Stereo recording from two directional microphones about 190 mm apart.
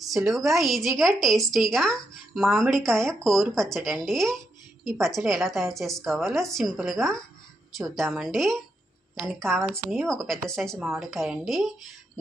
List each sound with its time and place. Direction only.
0.1 s speech: centre (ahead or behind)
9.6 s speech: 15° right (ahead or behind)
9.9 s speech: 5° left (ahead or behind)